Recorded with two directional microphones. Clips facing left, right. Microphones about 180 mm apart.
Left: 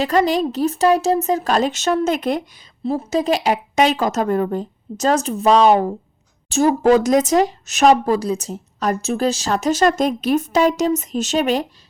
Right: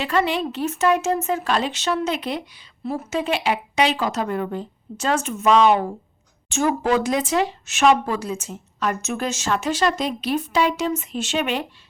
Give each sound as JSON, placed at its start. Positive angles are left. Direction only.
{"t": 0.0, "sound": "speech", "side_deg": 40}
{"t": 2.8, "sound": "speech", "side_deg": 30}